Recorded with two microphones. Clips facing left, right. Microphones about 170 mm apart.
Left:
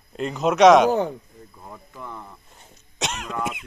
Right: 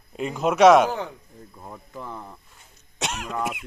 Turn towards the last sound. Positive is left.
turn(degrees=-5)  # may be behind; listen again after turning